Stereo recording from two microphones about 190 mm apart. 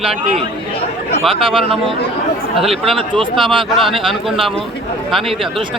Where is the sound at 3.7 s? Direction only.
Centre (ahead or behind).